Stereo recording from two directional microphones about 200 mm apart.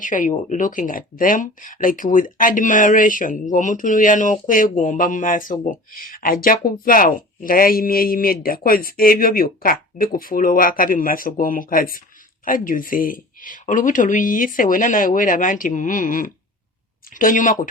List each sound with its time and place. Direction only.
0.0 s speech: 40° left (ahead or behind)